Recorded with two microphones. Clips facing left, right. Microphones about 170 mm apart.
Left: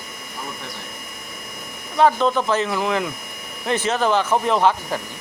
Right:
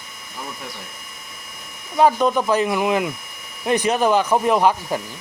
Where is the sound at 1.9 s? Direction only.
10° right (ahead or behind).